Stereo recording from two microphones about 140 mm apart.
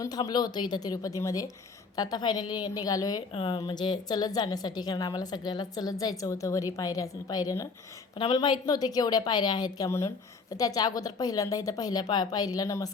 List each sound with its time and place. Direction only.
0.0 s a woman's voice: 30° left (ahead or behind)
3.3 s a woman's voice: 35° left (ahead or behind)